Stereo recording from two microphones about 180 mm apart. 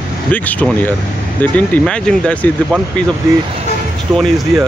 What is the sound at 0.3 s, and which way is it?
Speech, 10° left (ahead or behind).